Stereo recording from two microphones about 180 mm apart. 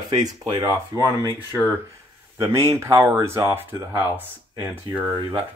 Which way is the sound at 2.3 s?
15° right (ahead or behind).